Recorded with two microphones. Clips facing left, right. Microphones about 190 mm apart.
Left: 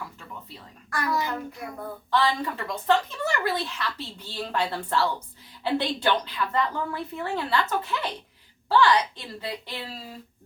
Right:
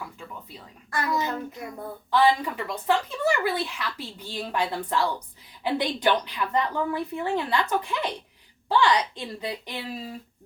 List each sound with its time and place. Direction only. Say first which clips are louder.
0.4 s a child's voice: right 1 dB; 20° right (ahead or behind)